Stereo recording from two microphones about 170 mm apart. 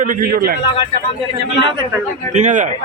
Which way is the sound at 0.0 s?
55° right (ahead or behind).